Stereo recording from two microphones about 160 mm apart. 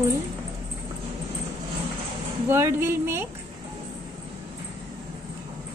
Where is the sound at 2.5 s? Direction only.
15° right (ahead or behind).